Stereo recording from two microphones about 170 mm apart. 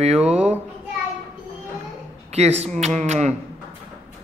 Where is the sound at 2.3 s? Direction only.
40° right (ahead or behind).